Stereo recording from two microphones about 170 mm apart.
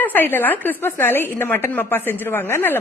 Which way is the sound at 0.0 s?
10° left (ahead or behind).